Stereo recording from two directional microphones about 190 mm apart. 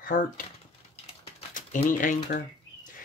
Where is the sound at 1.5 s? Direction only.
45° left (ahead or behind).